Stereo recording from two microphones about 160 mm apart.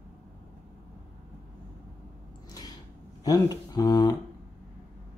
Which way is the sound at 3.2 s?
25° left (ahead or behind).